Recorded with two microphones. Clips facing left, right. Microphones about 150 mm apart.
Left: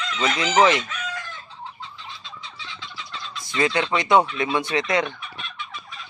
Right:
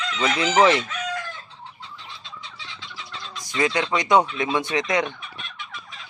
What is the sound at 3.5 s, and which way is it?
Fowl, 15° right (ahead or behind).